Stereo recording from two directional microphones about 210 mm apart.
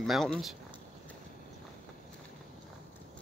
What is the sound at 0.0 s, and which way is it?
Speech, centre (ahead or behind).